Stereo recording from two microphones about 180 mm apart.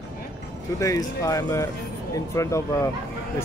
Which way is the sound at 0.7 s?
15° left (ahead or behind).